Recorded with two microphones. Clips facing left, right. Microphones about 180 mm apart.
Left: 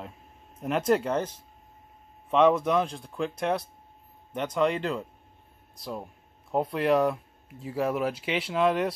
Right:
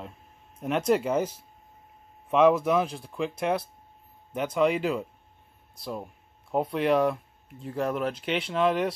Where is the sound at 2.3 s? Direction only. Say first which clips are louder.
Right 1 dB; 5° right (ahead or behind).